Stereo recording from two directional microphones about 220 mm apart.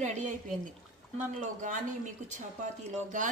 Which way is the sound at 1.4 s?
35° right (ahead or behind).